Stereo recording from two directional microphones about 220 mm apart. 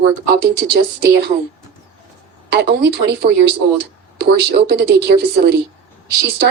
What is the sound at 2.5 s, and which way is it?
Speech, 50° right (ahead or behind).